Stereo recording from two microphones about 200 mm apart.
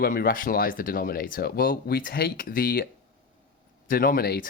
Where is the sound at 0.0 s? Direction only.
45° left (ahead or behind).